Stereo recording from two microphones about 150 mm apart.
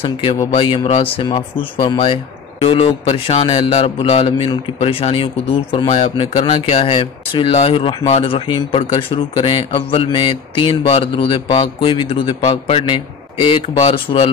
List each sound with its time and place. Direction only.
0.0 s speech: 35° left (ahead or behind)